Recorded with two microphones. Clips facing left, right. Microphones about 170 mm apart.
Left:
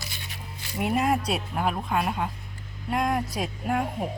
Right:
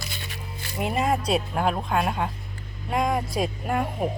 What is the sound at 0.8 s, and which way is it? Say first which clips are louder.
Speech: even; 5° left (ahead or behind).